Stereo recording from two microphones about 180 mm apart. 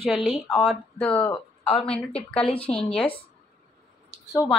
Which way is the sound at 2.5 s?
30° left (ahead or behind).